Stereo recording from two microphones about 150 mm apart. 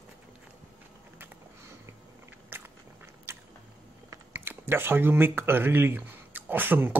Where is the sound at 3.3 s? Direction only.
15° right (ahead or behind).